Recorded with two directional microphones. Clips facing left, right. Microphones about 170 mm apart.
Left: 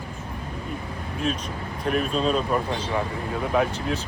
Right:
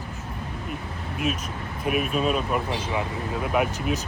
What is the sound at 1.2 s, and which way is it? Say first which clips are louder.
Speech: even; 10° right (ahead or behind).